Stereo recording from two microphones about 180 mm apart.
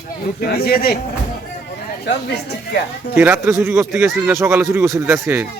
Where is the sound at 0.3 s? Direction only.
60° left (ahead or behind).